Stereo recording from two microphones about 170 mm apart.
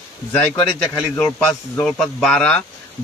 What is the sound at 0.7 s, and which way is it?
A man's voice, 5° left (ahead or behind).